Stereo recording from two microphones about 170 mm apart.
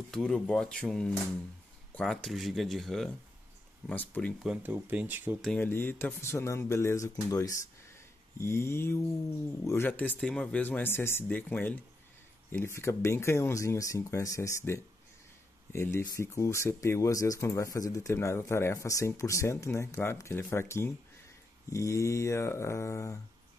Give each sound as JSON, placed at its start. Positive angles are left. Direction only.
{"t": 0.1, "sound": "speech", "side_deg": 5}
{"t": 4.4, "sound": "speech", "side_deg": -10}
{"t": 5.6, "sound": "speech", "side_deg": 15}